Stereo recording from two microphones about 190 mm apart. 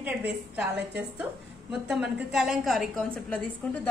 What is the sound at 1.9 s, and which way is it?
A woman's voice, 5° right (ahead or behind).